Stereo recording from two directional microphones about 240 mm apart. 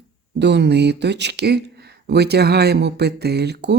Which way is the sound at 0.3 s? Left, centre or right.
Right.